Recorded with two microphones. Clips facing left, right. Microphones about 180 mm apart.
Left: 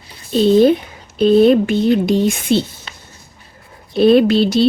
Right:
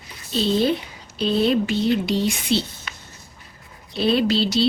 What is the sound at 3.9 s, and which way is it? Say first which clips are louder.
Speech: left 9 dB; 55° left (ahead or behind).